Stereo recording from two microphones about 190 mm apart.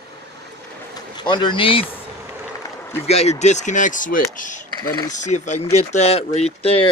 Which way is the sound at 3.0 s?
35° left (ahead or behind).